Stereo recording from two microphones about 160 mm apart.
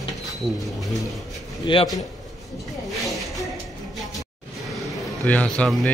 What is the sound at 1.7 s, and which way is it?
Speech, 30° left (ahead or behind).